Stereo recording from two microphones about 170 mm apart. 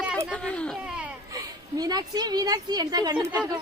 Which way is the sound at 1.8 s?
25° right (ahead or behind).